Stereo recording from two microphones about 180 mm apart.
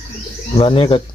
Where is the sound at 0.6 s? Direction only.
30° left (ahead or behind).